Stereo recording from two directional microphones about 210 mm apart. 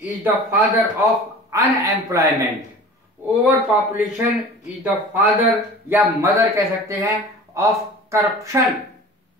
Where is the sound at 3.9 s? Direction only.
10° right (ahead or behind).